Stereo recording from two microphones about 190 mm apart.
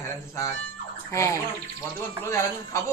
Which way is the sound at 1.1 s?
15° left (ahead or behind).